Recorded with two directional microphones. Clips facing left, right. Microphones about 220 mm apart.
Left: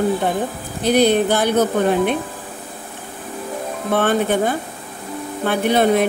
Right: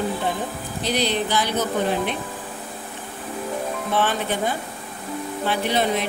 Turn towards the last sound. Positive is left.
turn(degrees=55)  # may be behind; listen again after turning